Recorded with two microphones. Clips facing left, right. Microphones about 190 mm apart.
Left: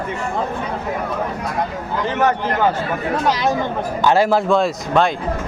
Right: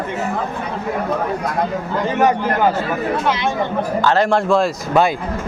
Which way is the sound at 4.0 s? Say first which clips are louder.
Left 1 dB; 10° left (ahead or behind).